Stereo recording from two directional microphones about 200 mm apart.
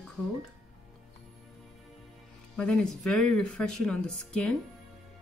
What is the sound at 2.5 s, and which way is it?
Speech, 5° left (ahead or behind).